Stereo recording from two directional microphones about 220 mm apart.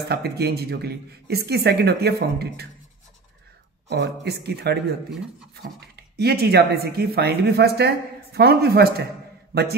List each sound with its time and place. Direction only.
0.1 s speech: 45° right (ahead or behind)
3.9 s a man's voice: 50° right (ahead or behind)